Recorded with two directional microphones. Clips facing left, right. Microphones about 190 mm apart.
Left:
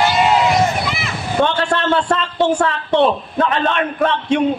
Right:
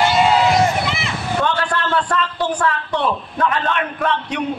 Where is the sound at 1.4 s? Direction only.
25° left (ahead or behind).